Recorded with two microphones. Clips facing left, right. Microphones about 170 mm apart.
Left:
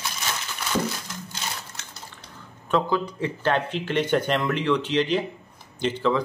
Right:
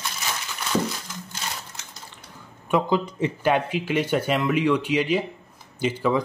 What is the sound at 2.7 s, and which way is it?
Speech, 15° right (ahead or behind).